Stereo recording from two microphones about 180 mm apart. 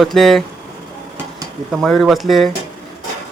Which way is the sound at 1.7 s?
Centre (ahead or behind).